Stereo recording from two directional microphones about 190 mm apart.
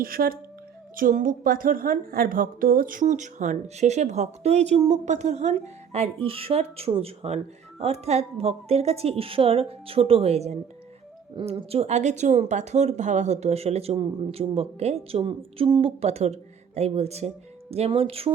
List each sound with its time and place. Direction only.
0.0 s a woman's voice: 50° right (ahead or behind); by 18.3 s 30° right (ahead or behind)